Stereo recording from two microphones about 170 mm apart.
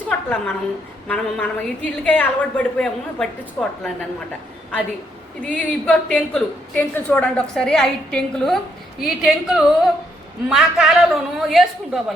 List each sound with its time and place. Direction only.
0.1 s a sound: 5° left (ahead or behind)
1.0 s a woman's voice: 10° left (ahead or behind)
5.4 s a woman's voice: 10° left (ahead or behind)